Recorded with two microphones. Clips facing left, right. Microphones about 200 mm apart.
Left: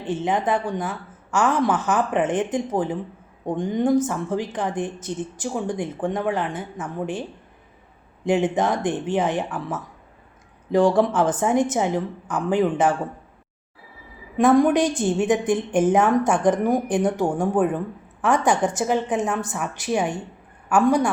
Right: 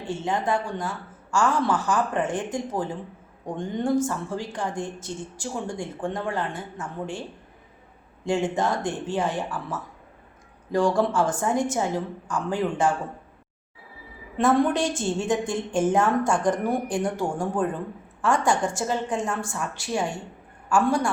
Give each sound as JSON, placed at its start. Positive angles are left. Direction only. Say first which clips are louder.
{"t": 0.0, "sound": "a woman's voice", "louder": "left 4 dB", "side_deg": 20}
{"t": 14.3, "sound": "a woman's voice", "louder": "left 5 dB", "side_deg": 15}